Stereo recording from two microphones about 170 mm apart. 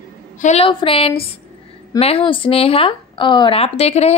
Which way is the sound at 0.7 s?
30° left (ahead or behind).